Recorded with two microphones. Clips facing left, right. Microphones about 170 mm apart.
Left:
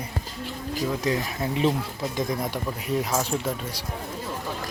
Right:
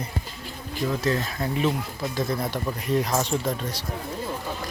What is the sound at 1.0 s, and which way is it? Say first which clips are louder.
Speech: even; 15° left (ahead or behind).